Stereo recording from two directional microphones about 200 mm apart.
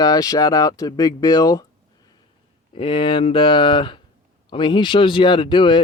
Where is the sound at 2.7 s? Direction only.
25° left (ahead or behind).